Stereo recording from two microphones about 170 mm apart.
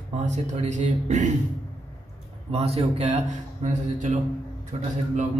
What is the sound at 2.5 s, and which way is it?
Speech, 35° right (ahead or behind).